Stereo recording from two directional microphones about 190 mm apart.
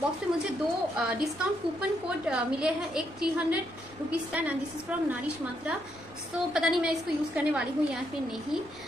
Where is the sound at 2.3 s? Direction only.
5° right (ahead or behind).